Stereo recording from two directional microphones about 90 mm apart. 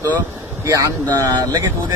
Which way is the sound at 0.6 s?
35° right (ahead or behind).